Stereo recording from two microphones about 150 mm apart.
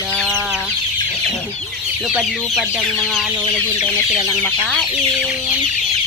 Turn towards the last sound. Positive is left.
turn(degrees=5)  # may be behind; listen again after turning